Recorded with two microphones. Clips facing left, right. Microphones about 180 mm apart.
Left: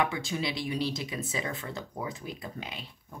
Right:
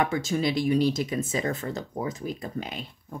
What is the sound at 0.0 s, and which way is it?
Speech, 45° right (ahead or behind).